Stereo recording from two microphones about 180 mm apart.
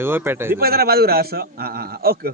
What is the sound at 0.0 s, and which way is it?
Speech, 10° right (ahead or behind).